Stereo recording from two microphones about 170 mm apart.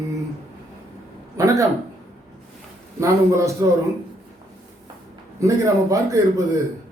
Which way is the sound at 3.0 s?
15° right (ahead or behind).